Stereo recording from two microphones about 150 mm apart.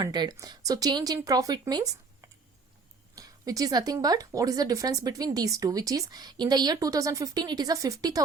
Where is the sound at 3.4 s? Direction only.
25° right (ahead or behind).